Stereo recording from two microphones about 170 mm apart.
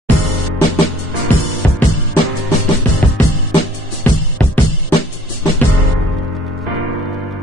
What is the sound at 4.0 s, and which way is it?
Music, 10° left (ahead or behind).